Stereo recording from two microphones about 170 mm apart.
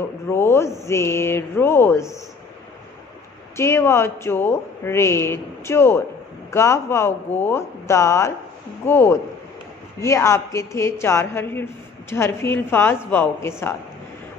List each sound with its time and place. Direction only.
0.3 s a woman's voice: 15° left (ahead or behind)
3.5 s a woman's voice: 15° left (ahead or behind)